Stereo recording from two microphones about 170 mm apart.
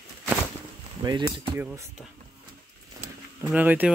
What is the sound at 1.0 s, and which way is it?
Speech, 25° right (ahead or behind).